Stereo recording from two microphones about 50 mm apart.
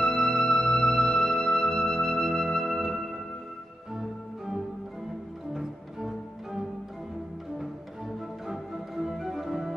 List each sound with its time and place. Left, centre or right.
0.0 s music: centre
8.5 s music: centre
9.1 s organ: centre